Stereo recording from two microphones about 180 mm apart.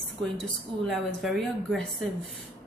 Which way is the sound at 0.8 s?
Centre (ahead or behind).